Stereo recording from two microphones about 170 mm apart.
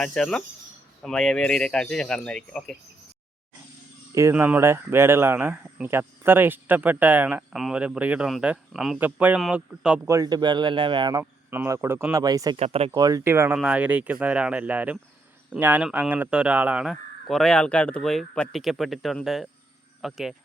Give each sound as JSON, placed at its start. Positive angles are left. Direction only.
{"t": 0.0, "sound": "speech", "side_deg": 5}
{"t": 4.1, "sound": "speech", "side_deg": -15}
{"t": 10.1, "sound": "speech", "side_deg": -20}
{"t": 11.2, "sound": "speech", "side_deg": -15}
{"t": 12.5, "sound": "speech", "side_deg": -35}
{"t": 12.9, "sound": "speech", "side_deg": -20}